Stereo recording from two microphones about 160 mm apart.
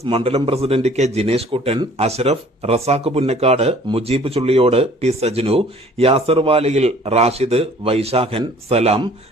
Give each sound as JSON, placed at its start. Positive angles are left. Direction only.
{"t": 0.0, "sound": "speech", "side_deg": -35}